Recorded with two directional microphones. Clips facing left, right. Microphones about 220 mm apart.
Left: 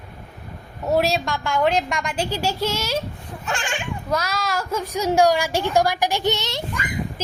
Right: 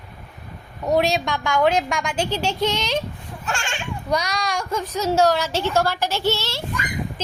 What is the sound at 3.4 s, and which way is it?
Speech, 20° left (ahead or behind).